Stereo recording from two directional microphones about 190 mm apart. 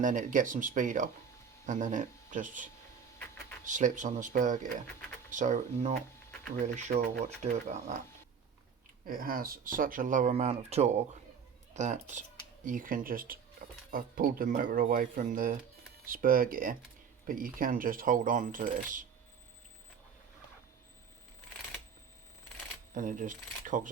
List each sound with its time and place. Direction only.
0.0 s speech: 40° right (ahead or behind)
9.0 s speech: 50° right (ahead or behind)
23.0 s speech: 45° right (ahead or behind)